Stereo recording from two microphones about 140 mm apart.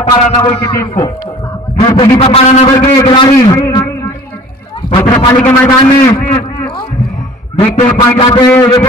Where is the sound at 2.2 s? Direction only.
45° left (ahead or behind).